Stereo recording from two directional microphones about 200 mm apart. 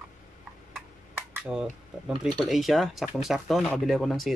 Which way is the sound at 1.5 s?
10° right (ahead or behind).